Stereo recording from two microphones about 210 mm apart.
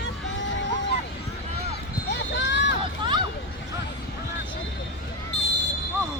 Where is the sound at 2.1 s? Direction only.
55° left (ahead or behind).